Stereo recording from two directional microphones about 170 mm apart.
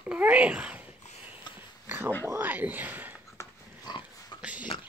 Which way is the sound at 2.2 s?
15° right (ahead or behind).